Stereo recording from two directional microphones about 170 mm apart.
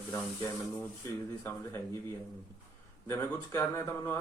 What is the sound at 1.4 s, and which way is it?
Speech, 20° left (ahead or behind).